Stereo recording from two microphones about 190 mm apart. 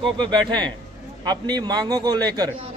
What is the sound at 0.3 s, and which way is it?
A man's voice, 25° right (ahead or behind).